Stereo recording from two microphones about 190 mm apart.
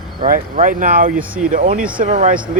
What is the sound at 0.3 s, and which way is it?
Speech, 45° right (ahead or behind).